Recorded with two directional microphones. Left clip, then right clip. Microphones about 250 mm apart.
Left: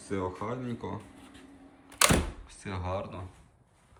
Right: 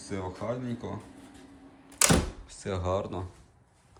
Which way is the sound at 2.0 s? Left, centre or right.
Centre.